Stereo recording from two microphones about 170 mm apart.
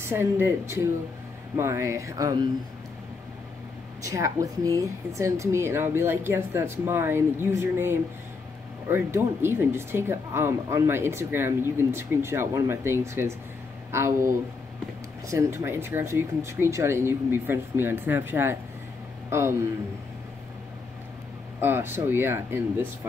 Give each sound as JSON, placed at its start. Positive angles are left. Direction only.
{"t": 0.0, "sound": "speech", "side_deg": -15}
{"t": 4.0, "sound": "speech", "side_deg": -20}
{"t": 21.5, "sound": "speech", "side_deg": -15}